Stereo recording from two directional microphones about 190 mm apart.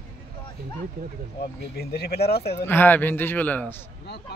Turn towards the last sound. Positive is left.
turn(degrees=10)  # may be behind; listen again after turning